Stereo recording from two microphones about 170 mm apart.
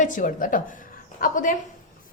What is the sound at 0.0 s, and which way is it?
A woman's voice, 50° left (ahead or behind).